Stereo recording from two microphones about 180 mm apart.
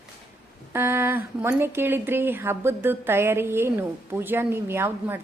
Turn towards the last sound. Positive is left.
turn(degrees=-10)  # may be behind; listen again after turning